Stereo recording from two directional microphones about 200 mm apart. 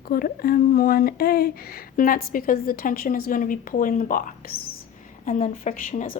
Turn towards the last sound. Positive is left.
turn(degrees=45)  # may be behind; listen again after turning